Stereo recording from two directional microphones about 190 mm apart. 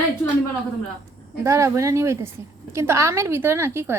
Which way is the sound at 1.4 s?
15° right (ahead or behind).